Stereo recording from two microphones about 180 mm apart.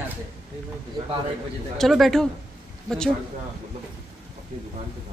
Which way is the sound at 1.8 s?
Centre (ahead or behind).